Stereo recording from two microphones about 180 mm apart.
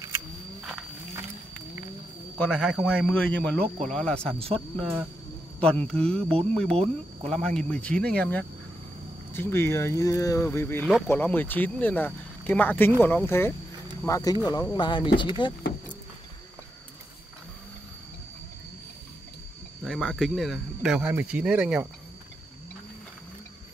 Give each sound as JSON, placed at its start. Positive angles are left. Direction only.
{"t": 0.6, "sound": "livestock", "side_deg": -5}
{"t": 2.3, "sound": "speech", "side_deg": 5}
{"t": 19.8, "sound": "speech", "side_deg": 0}